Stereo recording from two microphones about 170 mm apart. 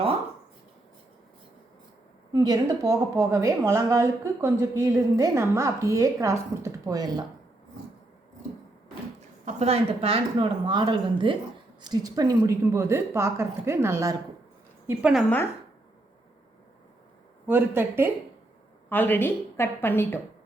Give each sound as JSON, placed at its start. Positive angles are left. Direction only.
{"t": 2.3, "sound": "a woman's voice", "side_deg": -20}
{"t": 9.5, "sound": "a woman's voice", "side_deg": -40}
{"t": 14.8, "sound": "a woman's voice", "side_deg": -5}
{"t": 17.4, "sound": "a woman's voice", "side_deg": -10}
{"t": 18.9, "sound": "a woman's voice", "side_deg": 10}